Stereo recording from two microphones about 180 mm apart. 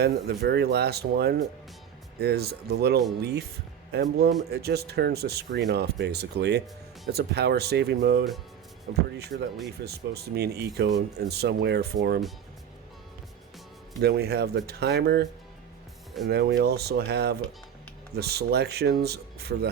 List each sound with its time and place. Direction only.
0.0 s speech: 65° right (ahead or behind)
14.0 s speech: 65° right (ahead or behind)